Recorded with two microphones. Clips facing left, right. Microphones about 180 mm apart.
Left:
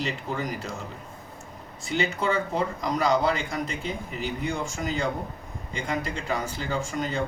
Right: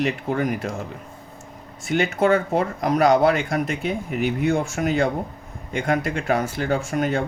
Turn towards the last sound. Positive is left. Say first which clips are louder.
# right 6 dB
turn(degrees=-60)  # may be behind; listen again after turning